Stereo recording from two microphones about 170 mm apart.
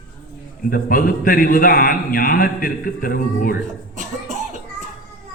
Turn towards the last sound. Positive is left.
turn(degrees=-45)  # may be behind; listen again after turning